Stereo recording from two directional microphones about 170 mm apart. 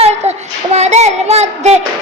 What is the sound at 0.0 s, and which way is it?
Child singing, 40° right (ahead or behind).